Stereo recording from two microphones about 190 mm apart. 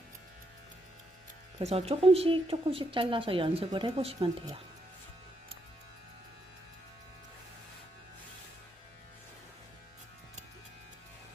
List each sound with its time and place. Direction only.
1.5 s speech: 30° right (ahead or behind)